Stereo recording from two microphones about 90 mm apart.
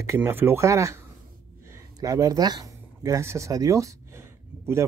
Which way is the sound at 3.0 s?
35° right (ahead or behind).